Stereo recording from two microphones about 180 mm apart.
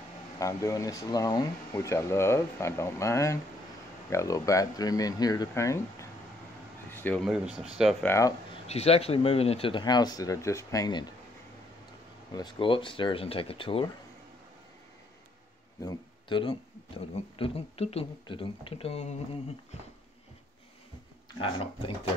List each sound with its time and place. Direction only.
0.4 s speech: 15° left (ahead or behind)
7.2 s speech: 5° right (ahead or behind)
8.0 s speech: 15° left (ahead or behind)
8.6 s speech: 35° left (ahead or behind)
12.3 s speech: 25° left (ahead or behind)
15.8 s speech: 25° left (ahead or behind)
21.4 s speech: 30° left (ahead or behind)